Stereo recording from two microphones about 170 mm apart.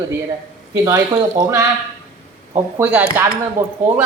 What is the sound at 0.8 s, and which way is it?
Speech, 20° right (ahead or behind).